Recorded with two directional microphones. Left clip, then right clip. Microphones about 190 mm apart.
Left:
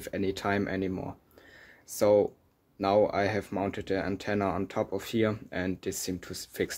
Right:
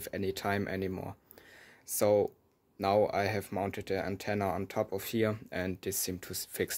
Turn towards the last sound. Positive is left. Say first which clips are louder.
# left 2 dB
turn(degrees=-25)  # may be behind; listen again after turning